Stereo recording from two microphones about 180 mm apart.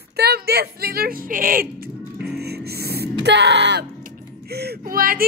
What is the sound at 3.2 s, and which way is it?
Speech, 70° right (ahead or behind).